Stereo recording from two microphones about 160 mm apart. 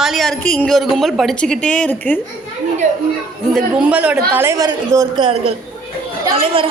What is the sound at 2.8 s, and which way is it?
Speech, 55° right (ahead or behind).